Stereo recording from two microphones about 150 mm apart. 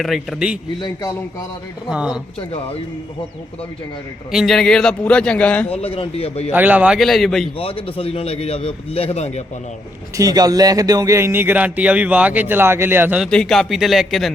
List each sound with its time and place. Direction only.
0.0 s a man's voice: centre (ahead or behind)
0.8 s a man's voice: 25° left (ahead or behind)
1.9 s a man's voice: 5° right (ahead or behind)
4.3 s a man's voice: centre (ahead or behind)
5.6 s a man's voice: 40° left (ahead or behind)
6.5 s a man's voice: 10° right (ahead or behind)
7.6 s a man's voice: 40° left (ahead or behind)
10.2 s speech: 25° right (ahead or behind)
13.2 s a man's voice: 5° left (ahead or behind)